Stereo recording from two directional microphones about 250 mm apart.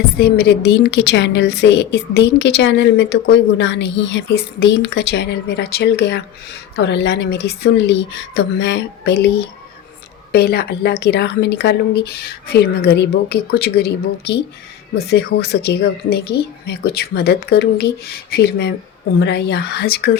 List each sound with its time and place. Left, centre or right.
0.2 s a woman's voice: left
10.3 s speech: left